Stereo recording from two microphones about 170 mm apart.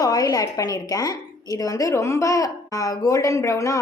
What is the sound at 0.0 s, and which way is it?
A woman's voice, 20° left (ahead or behind).